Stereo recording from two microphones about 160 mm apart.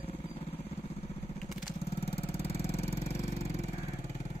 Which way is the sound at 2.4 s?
40° left (ahead or behind).